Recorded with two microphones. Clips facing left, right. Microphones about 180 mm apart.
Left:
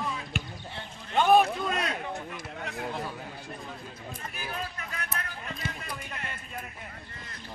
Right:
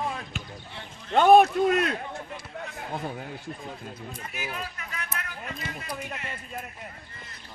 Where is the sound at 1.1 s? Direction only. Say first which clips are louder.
Right 5 dB; 60° right (ahead or behind).